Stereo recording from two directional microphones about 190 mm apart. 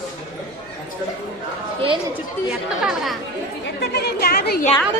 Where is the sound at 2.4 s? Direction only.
Centre (ahead or behind).